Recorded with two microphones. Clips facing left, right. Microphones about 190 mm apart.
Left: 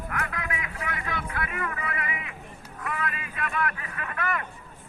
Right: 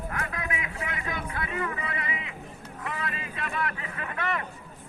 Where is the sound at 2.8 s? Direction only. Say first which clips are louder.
Left 2 dB; 25° right (ahead or behind).